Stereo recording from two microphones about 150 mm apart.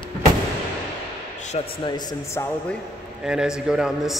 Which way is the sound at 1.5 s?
55° left (ahead or behind).